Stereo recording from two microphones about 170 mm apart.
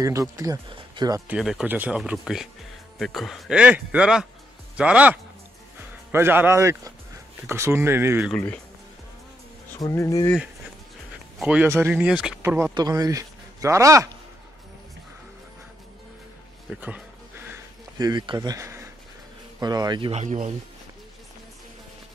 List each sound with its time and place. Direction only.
0.0 s speech: 20° right (ahead or behind)
1.2 s speech: 5° right (ahead or behind)
8.3 s speech: 10° left (ahead or behind)
9.8 s speech: 20° left (ahead or behind)
11.3 s speech: 5° right (ahead or behind)
12.4 s speech: 15° right (ahead or behind)
17.9 s speech: 25° right (ahead or behind)
20.1 s speech: 45° right (ahead or behind)